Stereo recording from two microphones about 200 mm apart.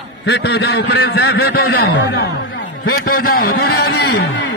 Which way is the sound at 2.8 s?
50° left (ahead or behind).